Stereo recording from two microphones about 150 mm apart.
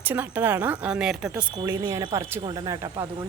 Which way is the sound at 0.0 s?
10° right (ahead or behind).